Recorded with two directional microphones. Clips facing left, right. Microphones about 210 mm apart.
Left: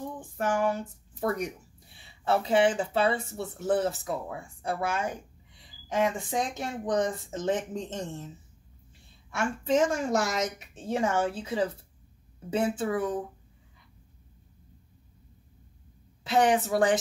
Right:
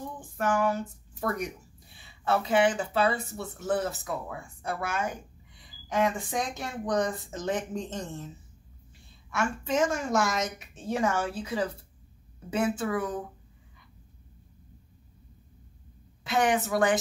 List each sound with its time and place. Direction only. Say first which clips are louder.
0.4 s speech: right 1 dB; 30° left (ahead or behind)
9.3 s a woman's voice: left 2 dB; 30° left (ahead or behind)
16.3 s a woman's voice: left 2 dB; 30° left (ahead or behind)